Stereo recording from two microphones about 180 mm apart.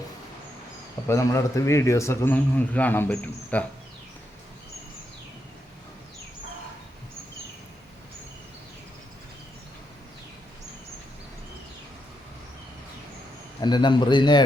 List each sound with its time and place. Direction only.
1.0 s a man's voice: 15° left (ahead or behind)
13.6 s a man's voice: 25° left (ahead or behind)